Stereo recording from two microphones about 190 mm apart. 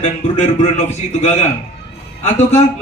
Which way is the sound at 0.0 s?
35° left (ahead or behind).